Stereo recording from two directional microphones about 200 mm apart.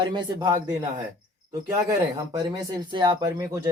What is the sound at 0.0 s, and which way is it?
Speech, 25° right (ahead or behind).